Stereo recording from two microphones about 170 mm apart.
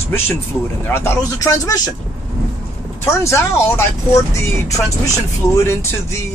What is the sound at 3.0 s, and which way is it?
Speech, 15° left (ahead or behind).